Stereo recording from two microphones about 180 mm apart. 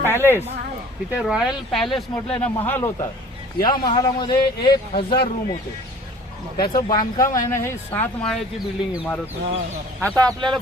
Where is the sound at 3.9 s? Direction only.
25° left (ahead or behind).